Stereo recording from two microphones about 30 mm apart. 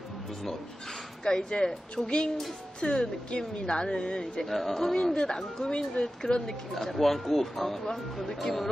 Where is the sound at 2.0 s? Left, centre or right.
Centre.